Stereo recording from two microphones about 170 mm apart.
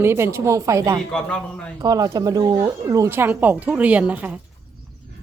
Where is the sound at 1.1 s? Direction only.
5° left (ahead or behind).